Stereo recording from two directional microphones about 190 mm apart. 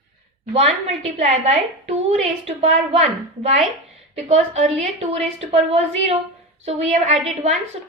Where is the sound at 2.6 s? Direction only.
35° right (ahead or behind).